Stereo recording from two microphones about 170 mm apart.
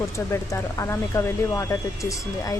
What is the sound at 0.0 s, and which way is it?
Speech, 15° left (ahead or behind).